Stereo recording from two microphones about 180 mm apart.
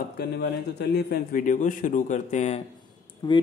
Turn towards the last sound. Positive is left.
turn(degrees=25)  # may be behind; listen again after turning